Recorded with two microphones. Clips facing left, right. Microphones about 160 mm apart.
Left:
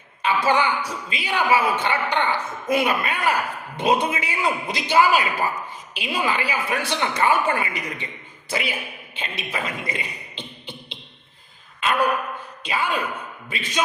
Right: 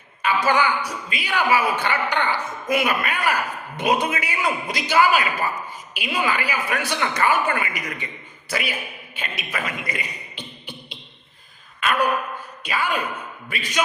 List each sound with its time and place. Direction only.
0.2 s a man's voice: 25° left (ahead or behind)
11.8 s a sound: 25° left (ahead or behind)
12.6 s a man's voice: 25° left (ahead or behind)